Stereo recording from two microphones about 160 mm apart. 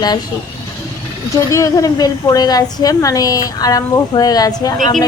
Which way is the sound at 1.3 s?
20° left (ahead or behind).